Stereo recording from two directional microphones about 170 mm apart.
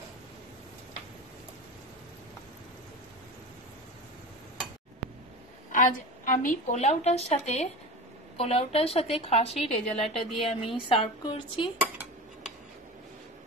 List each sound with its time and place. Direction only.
5.7 s a woman's voice: 50° left (ahead or behind); by 11.7 s 30° left (ahead or behind)
11.8 s dishes: 10° right (ahead or behind)